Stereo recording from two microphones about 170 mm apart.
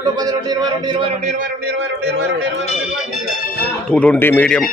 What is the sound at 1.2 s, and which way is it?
Speech, 45° right (ahead or behind).